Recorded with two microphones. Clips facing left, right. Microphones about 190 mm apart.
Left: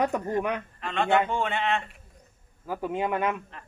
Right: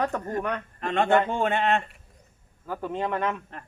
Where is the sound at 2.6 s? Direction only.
10° left (ahead or behind).